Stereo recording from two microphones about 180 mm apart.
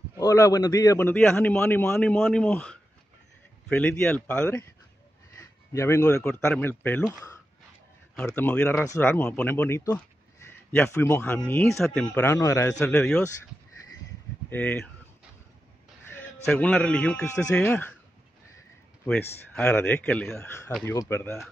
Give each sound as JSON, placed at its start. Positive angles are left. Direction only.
{"t": 0.2, "sound": "speech", "side_deg": 20}
{"t": 5.7, "sound": "speech", "side_deg": 15}
{"t": 8.3, "sound": "speech", "side_deg": 10}
{"t": 12.7, "sound": "a man's voice", "side_deg": 5}
{"t": 14.5, "sound": "speech", "side_deg": 10}
{"t": 16.4, "sound": "a man's voice", "side_deg": 5}
{"t": 19.0, "sound": "speech", "side_deg": 5}